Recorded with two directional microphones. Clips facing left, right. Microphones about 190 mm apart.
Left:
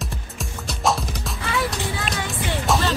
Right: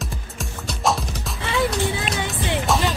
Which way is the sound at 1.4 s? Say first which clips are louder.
Right 4 dB; 25° right (ahead or behind).